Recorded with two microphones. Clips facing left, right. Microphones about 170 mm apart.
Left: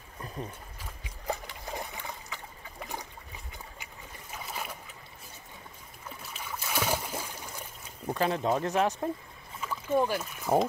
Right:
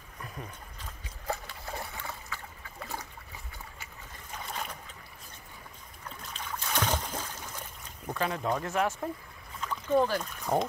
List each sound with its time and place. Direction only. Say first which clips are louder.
0.7 s trickle: left 1 dB; 15° left (ahead or behind)
3.8 s boat: left 1 dB; 5° left (ahead or behind)
6.0 s boat: even; 10° left (ahead or behind)
8.1 s speech: left 3 dB; 25° left (ahead or behind)
9.6 s speech: right 1 dB; 10° left (ahead or behind)